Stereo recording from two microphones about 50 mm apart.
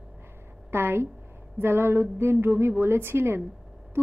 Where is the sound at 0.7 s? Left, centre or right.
Right.